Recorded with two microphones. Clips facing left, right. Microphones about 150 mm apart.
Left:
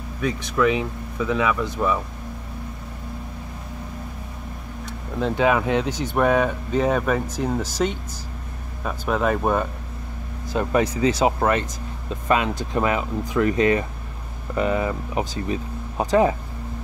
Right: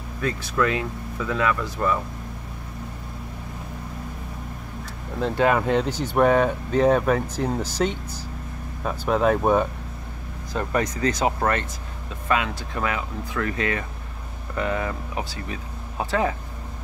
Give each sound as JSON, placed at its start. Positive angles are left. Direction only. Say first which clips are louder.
{"t": 0.2, "sound": "speech", "louder": "left 3 dB", "side_deg": 15}
{"t": 5.2, "sound": "speech", "louder": "left 1 dB", "side_deg": 5}
{"t": 9.1, "sound": "speech", "louder": "right 2 dB", "side_deg": 0}
{"t": 10.6, "sound": "speech", "louder": "left 4 dB", "side_deg": 10}
{"t": 12.3, "sound": "speech", "louder": "left 3 dB", "side_deg": 25}